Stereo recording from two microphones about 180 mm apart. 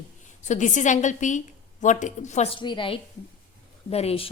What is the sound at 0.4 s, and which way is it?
A woman's voice, 40° left (ahead or behind).